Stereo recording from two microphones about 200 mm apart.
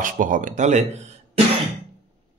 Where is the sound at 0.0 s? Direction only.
40° right (ahead or behind).